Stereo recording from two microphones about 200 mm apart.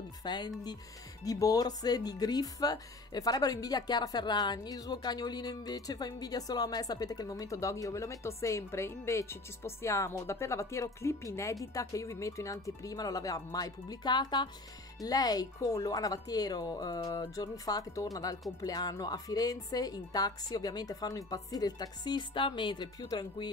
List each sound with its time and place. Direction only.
0.2 s a woman's voice: 20° left (ahead or behind)